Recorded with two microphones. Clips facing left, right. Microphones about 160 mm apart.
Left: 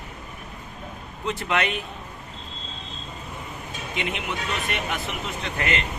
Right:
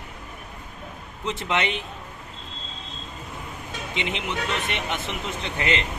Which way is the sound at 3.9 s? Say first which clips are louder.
Right 1 dB; 25° right (ahead or behind).